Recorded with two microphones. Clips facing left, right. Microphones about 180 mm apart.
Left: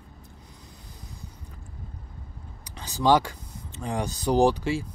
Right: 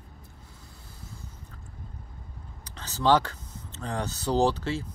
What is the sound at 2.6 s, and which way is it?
Speech, 15° left (ahead or behind).